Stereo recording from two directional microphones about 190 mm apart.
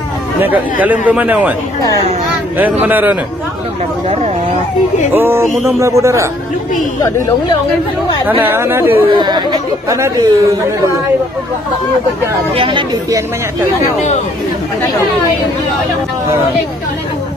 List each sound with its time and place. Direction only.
0.4 s speech: 10° right (ahead or behind)
2.5 s speech: 10° right (ahead or behind)
5.1 s speech: 10° right (ahead or behind)
8.3 s speech: 10° right (ahead or behind)
9.1 s speech: 25° right (ahead or behind)
12.5 s speech: 25° right (ahead or behind)